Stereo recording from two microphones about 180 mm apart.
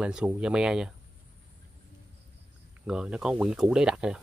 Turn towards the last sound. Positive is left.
turn(degrees=-5)  # may be behind; listen again after turning